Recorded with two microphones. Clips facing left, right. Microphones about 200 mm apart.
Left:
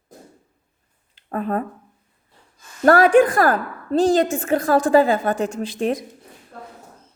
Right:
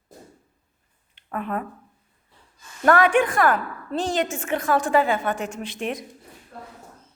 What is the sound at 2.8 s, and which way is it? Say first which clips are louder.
A woman's voice: left 5 dB; 35° left (ahead or behind).